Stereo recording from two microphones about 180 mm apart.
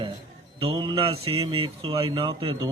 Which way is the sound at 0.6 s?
30° right (ahead or behind).